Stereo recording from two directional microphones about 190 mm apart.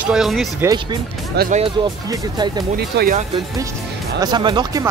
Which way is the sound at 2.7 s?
60° right (ahead or behind).